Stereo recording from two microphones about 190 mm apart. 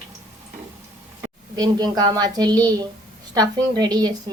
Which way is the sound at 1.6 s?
20° right (ahead or behind).